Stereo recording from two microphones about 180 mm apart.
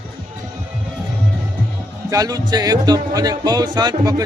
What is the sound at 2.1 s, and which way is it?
Speech, 20° right (ahead or behind).